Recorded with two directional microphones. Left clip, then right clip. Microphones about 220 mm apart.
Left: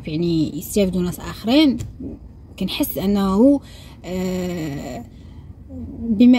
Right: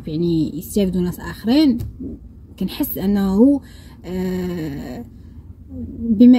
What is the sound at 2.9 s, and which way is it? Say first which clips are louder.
Speech: even; 10° left (ahead or behind).